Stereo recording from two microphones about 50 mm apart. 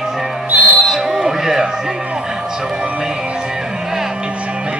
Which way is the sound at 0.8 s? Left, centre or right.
Centre.